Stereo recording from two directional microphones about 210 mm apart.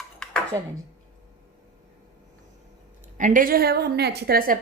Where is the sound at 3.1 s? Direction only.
40° right (ahead or behind).